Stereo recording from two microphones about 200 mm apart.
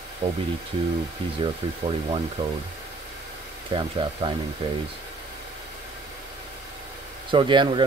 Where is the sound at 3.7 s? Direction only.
25° right (ahead or behind).